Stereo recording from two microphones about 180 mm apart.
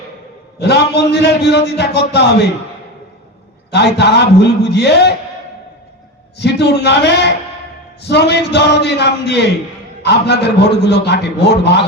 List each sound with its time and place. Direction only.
0.6 s a man's voice: 70° left (ahead or behind)
3.7 s a man's voice: 70° left (ahead or behind)
6.4 s a man's voice: 70° left (ahead or behind)